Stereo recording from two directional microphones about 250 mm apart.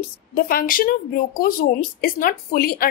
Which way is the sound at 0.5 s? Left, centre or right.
Left.